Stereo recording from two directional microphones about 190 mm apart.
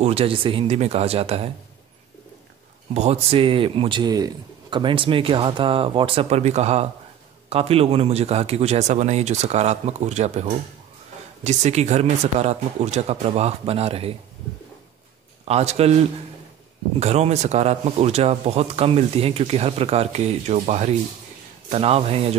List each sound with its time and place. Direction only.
0.0 s speech: 30° right (ahead or behind)
2.9 s speech: 35° right (ahead or behind)
15.4 s speech: 35° right (ahead or behind)
17.0 s speech: 35° right (ahead or behind)